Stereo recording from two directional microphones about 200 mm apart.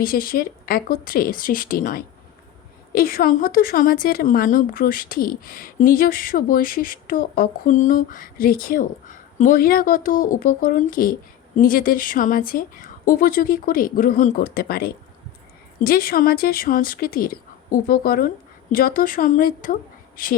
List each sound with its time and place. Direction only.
0.0 s a woman's voice: 45° left (ahead or behind)